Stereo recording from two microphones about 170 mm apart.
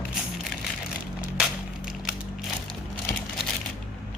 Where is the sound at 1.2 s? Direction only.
5° right (ahead or behind).